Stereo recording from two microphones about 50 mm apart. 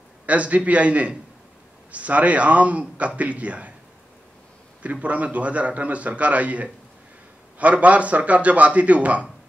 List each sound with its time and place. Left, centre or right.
0.3 s a man's voice: right
4.8 s a man's voice: right